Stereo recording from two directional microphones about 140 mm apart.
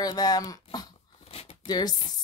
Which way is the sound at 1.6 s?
30° left (ahead or behind).